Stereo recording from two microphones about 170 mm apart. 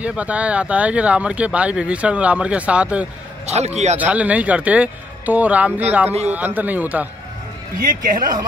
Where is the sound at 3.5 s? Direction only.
40° right (ahead or behind).